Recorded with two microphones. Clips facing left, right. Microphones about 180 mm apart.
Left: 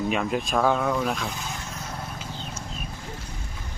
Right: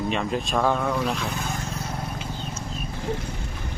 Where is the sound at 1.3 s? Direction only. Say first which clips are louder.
Right 4 dB; 60° right (ahead or behind).